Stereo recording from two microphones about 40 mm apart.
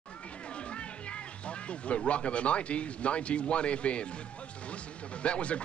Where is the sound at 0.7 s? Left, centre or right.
Left.